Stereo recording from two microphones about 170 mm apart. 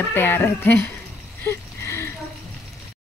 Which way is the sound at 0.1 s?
10° left (ahead or behind).